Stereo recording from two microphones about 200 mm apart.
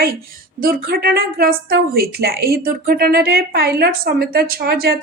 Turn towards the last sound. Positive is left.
turn(degrees=-50)  # may be behind; listen again after turning